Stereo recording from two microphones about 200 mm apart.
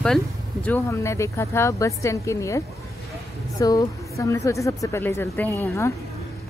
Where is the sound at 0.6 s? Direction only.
15° left (ahead or behind).